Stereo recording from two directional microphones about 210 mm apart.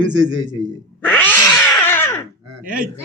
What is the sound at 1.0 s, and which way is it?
Cat, 10° left (ahead or behind).